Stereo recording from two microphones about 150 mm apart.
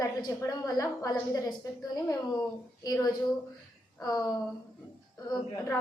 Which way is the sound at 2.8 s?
25° left (ahead or behind).